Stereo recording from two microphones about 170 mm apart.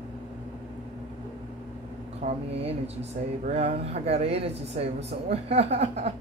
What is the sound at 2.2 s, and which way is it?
Speech, 45° right (ahead or behind).